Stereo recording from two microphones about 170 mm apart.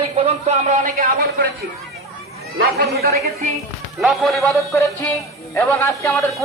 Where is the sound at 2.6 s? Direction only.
70° right (ahead or behind).